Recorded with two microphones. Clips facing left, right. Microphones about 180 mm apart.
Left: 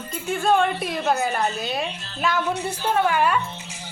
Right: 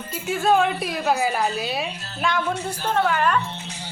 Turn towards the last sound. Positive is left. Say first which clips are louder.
# even
turn(degrees=10)  # may be behind; listen again after turning